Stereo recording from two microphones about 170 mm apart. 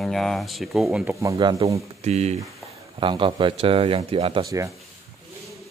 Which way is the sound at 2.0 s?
40° right (ahead or behind).